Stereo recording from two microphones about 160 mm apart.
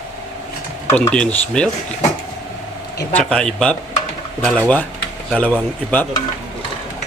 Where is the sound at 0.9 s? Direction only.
15° left (ahead or behind).